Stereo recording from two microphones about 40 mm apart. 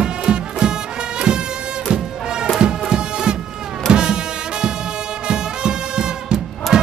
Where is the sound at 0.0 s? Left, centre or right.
Centre.